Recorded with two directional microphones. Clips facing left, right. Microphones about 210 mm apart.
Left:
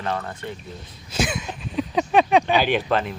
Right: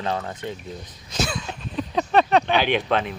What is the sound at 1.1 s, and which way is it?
Speech, 5° left (ahead or behind).